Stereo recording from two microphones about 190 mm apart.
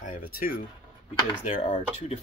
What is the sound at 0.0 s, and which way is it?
Speech, 45° left (ahead or behind).